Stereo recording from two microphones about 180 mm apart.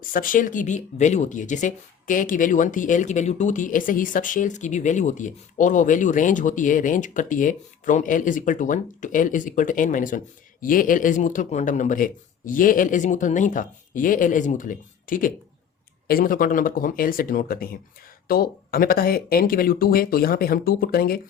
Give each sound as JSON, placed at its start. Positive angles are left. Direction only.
{"t": 0.1, "sound": "speech", "side_deg": 50}